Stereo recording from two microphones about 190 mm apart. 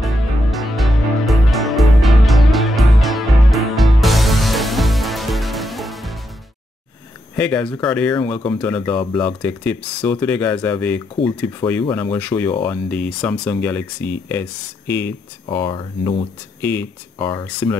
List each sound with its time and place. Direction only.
0.0 s music: centre (ahead or behind)
7.3 s speech: 5° left (ahead or behind)
15.4 s speech: 25° left (ahead or behind)